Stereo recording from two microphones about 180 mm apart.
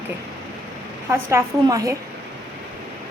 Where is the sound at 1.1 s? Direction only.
15° right (ahead or behind).